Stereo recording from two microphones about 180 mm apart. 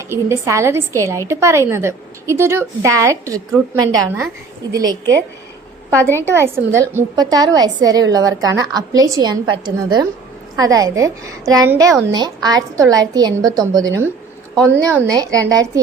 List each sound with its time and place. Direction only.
0.1 s a woman's voice: 15° right (ahead or behind)
6.1 s a woman's voice: 10° left (ahead or behind)
6.4 s a woman's voice: 15° right (ahead or behind)
15.1 s a woman's voice: 20° right (ahead or behind)